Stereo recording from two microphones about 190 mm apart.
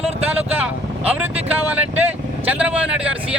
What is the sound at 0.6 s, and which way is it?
Speech, 5° right (ahead or behind).